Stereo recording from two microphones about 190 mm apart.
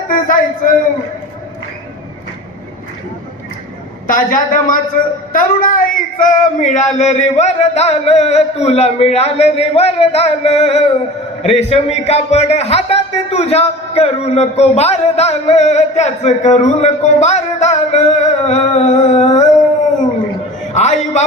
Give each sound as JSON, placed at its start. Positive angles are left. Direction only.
{"t": 0.1, "sound": "a sound", "side_deg": 45}
{"t": 4.0, "sound": "a woman's voice", "side_deg": 45}
{"t": 20.7, "sound": "music", "side_deg": 40}